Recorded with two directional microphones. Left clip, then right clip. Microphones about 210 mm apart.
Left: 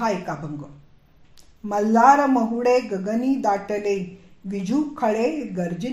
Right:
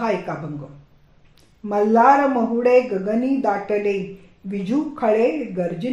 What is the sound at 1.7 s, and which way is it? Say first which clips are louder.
Speech: right 1 dB; 30° left (ahead or behind).